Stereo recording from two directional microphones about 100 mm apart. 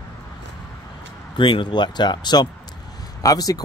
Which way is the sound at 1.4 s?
55° left (ahead or behind).